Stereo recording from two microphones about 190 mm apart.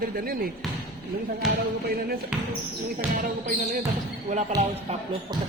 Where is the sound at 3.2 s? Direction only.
45° right (ahead or behind).